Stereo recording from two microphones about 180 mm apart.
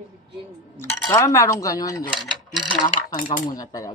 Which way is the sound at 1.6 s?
20° left (ahead or behind).